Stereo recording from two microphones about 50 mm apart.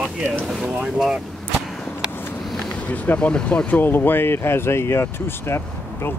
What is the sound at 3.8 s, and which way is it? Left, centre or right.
Speech, left.